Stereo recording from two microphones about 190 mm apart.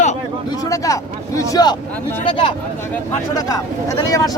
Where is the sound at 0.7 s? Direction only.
15° left (ahead or behind).